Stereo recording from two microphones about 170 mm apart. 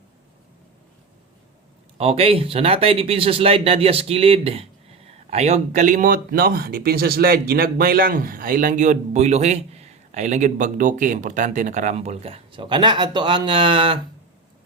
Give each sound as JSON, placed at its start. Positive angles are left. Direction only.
{"t": 2.0, "sound": "speech", "side_deg": -35}